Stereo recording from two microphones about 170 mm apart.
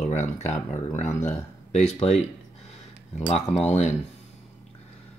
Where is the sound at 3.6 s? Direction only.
40° left (ahead or behind).